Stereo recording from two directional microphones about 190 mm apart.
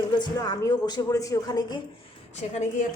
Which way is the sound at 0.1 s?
20° left (ahead or behind).